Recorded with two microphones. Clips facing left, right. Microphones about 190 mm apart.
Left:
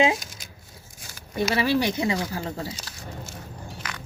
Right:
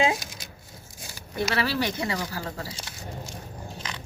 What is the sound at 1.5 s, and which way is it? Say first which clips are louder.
Speech: left 5 dB; 15° left (ahead or behind).